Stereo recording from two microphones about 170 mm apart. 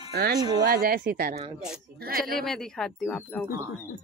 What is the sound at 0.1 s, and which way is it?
Speech, 70° right (ahead or behind).